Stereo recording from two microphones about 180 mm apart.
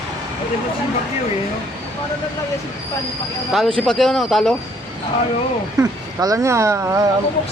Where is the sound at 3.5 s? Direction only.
Centre (ahead or behind).